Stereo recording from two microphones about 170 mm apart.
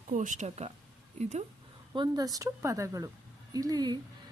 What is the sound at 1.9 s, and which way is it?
Speech, 25° right (ahead or behind).